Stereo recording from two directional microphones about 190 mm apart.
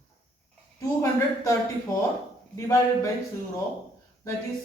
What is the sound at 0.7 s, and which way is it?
Speech, 15° left (ahead or behind).